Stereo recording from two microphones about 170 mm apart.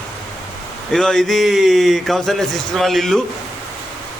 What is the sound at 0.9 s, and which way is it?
A man's voice, centre (ahead or behind).